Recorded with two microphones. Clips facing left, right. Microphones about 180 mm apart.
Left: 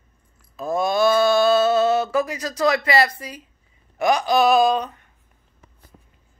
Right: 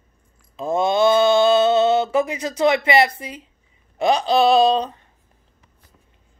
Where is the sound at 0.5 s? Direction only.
25° right (ahead or behind).